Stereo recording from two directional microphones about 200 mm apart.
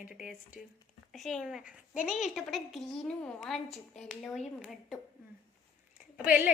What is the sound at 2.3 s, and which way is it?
A woman's voice, centre (ahead or behind).